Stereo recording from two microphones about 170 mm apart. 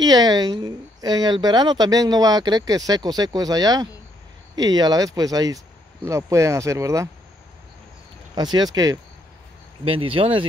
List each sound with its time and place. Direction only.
0.0 s speech: 25° right (ahead or behind)
8.4 s speech: 25° right (ahead or behind)